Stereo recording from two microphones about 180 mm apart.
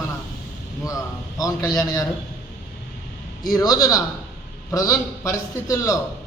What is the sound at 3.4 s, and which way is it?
A man's voice, 20° left (ahead or behind).